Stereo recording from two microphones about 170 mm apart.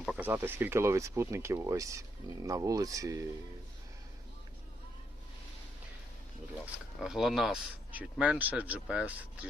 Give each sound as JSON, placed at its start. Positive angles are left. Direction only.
{"t": 0.0, "sound": "speech", "side_deg": -5}
{"t": 7.0, "sound": "speech", "side_deg": -5}